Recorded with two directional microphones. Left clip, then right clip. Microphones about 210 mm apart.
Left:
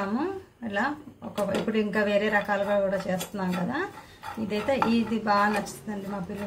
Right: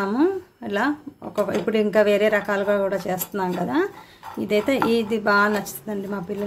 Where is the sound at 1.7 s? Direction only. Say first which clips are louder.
Right 9 dB; 55° right (ahead or behind).